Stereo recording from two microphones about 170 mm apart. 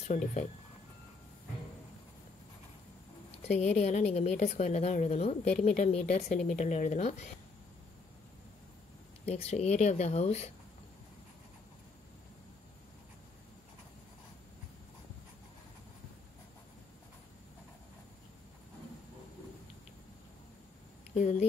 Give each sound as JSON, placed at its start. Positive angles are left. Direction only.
{"t": 0.1, "sound": "speech", "side_deg": 45}
{"t": 3.4, "sound": "a woman's voice", "side_deg": 40}
{"t": 9.2, "sound": "a woman's voice", "side_deg": 40}
{"t": 21.1, "sound": "speech", "side_deg": 45}